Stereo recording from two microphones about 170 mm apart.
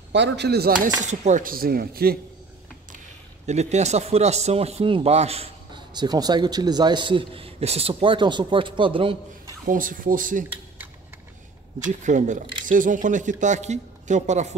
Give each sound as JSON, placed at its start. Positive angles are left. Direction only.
{"t": 0.1, "sound": "speech", "side_deg": -85}
{"t": 1.0, "sound": "speech", "side_deg": -45}
{"t": 3.4, "sound": "a man's voice", "side_deg": -40}
{"t": 9.7, "sound": "speech", "side_deg": -55}
{"t": 11.9, "sound": "speech", "side_deg": -45}